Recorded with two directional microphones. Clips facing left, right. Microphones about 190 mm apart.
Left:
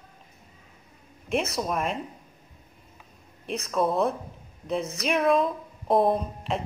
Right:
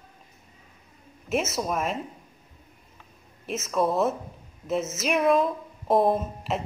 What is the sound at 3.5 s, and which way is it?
Speech, centre (ahead or behind).